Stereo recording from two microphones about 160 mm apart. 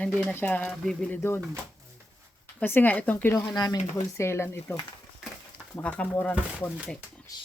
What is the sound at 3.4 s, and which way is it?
Speech, 25° left (ahead or behind).